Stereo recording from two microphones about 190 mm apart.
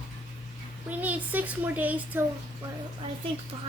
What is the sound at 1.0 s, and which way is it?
A woman's voice, 10° right (ahead or behind).